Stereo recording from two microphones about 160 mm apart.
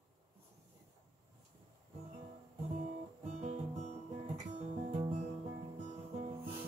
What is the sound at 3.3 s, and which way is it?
Guitar, 45° right (ahead or behind).